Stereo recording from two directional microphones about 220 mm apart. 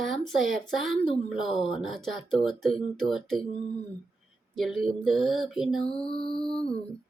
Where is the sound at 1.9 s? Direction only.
Centre (ahead or behind).